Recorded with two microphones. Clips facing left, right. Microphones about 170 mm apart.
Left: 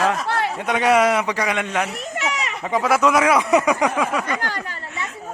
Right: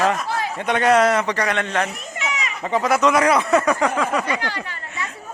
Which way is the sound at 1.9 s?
70° left (ahead or behind).